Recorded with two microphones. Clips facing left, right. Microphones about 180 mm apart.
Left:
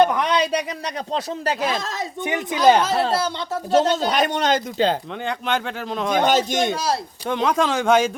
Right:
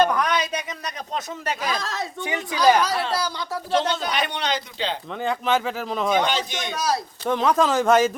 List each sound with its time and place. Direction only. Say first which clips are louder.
0.0 s a man's voice: left 3 dB; 25° left (ahead or behind)
3.7 s speech: left 5 dB; 45° left (ahead or behind)
5.2 s speech: right 4 dB; centre (ahead or behind)
6.2 s speech: left 7 dB; 45° left (ahead or behind)
6.7 s a man's voice: left 1 dB; 30° left (ahead or behind)
7.3 s speech: right 1 dB; centre (ahead or behind)